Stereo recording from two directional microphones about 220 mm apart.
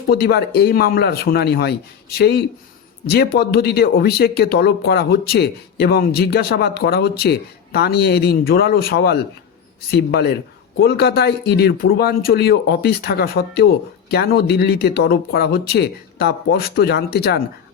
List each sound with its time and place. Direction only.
0.1 s speech: 45° left (ahead or behind)